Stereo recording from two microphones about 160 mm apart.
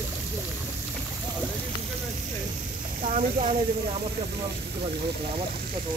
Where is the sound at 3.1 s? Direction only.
45° right (ahead or behind).